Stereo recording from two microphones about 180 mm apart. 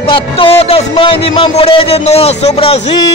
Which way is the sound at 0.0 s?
30° left (ahead or behind).